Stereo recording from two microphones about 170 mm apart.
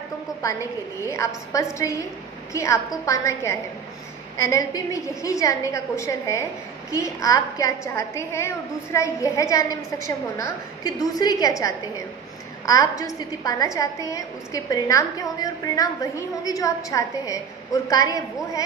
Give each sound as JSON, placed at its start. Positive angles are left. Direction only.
{"t": 0.4, "sound": "a woman's voice", "side_deg": 20}